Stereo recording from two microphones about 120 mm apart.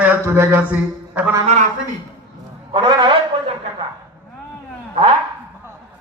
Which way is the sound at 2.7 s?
40° right (ahead or behind).